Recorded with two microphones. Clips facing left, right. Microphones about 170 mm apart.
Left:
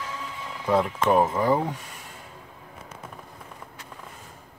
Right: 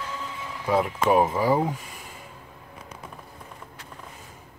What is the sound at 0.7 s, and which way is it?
Speech, 5° right (ahead or behind).